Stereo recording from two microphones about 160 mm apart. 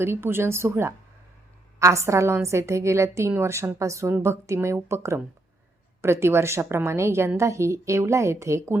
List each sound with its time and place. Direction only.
0.0 s a woman's voice: 15° right (ahead or behind)